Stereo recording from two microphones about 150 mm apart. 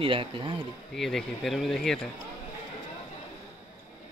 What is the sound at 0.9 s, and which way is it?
Speech, centre (ahead or behind).